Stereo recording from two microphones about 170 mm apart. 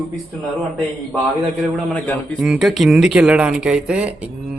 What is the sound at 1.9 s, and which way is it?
A man's voice, 10° left (ahead or behind).